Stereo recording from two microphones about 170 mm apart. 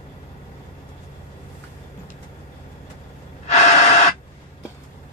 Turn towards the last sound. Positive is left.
turn(degrees=40)  # may be behind; listen again after turning